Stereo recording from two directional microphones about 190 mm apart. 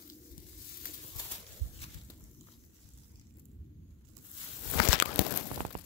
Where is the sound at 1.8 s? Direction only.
30° left (ahead or behind).